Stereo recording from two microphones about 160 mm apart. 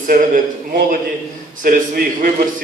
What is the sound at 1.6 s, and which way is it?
Speech, 60° right (ahead or behind).